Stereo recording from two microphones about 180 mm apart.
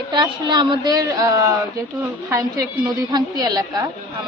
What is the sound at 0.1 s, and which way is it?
A woman's voice, 25° right (ahead or behind).